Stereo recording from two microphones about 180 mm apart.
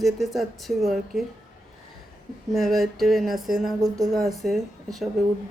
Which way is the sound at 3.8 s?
20° right (ahead or behind).